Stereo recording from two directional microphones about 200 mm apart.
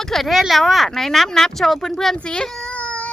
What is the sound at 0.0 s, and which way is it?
Speech, centre (ahead or behind).